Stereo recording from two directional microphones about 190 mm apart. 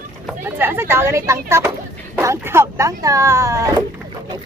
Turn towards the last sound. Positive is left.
turn(degrees=-15)  # may be behind; listen again after turning